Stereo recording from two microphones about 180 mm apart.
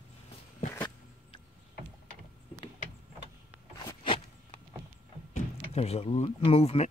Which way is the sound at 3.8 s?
30° left (ahead or behind).